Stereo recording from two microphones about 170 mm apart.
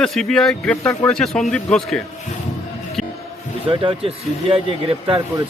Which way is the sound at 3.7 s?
30° right (ahead or behind).